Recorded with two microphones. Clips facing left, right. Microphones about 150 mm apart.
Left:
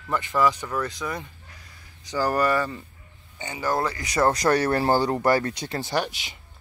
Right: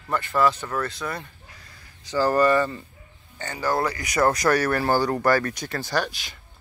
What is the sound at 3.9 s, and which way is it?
Speech, 25° left (ahead or behind).